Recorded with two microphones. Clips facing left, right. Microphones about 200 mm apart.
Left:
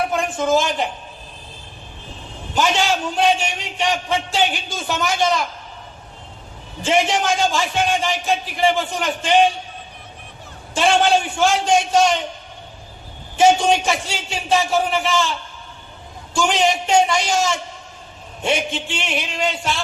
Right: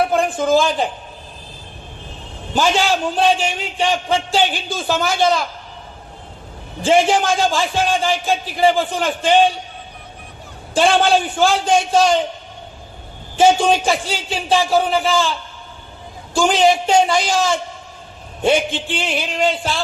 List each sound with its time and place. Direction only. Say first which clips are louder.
0.1 s speech: right 3 dB; 30° right (ahead or behind)
2.6 s a man's voice: right 2 dB; 30° right (ahead or behind)
6.8 s a man's voice: right 4 dB; 30° right (ahead or behind)
10.8 s a man's voice: right 2 dB; 35° right (ahead or behind)
13.3 s a man's voice: right 1 dB; 30° right (ahead or behind)
16.3 s a man's voice: right 4 dB; 35° right (ahead or behind)